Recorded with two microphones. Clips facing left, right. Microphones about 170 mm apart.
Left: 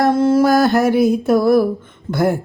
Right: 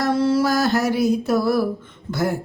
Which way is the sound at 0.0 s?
50° left (ahead or behind).